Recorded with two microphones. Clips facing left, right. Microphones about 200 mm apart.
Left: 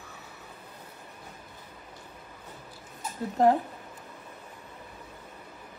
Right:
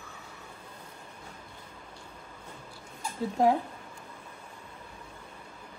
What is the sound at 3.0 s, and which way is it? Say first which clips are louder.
Speech: left 1 dB; 5° left (ahead or behind).